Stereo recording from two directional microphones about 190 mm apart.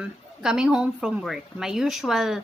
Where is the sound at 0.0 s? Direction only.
5° right (ahead or behind).